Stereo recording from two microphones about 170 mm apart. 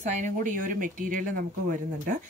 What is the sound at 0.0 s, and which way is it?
Speech, 50° right (ahead or behind).